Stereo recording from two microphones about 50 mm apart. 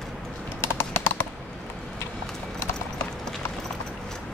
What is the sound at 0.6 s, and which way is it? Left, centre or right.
Typing, left.